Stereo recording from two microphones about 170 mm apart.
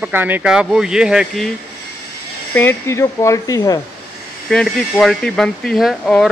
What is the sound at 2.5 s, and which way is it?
Speech, 15° left (ahead or behind).